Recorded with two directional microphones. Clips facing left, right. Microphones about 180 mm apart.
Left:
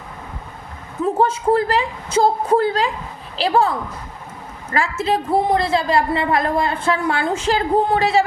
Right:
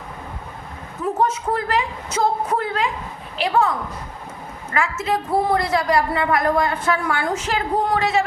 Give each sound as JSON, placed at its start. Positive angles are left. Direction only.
{"t": 1.0, "sound": "a woman's voice", "side_deg": 30}